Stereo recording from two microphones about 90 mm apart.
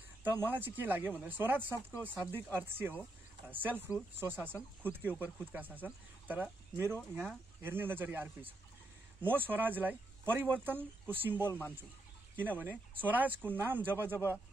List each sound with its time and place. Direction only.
0.2 s speech: 25° right (ahead or behind)